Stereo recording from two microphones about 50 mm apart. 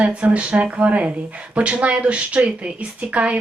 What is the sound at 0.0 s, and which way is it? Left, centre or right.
A woman's voice, right.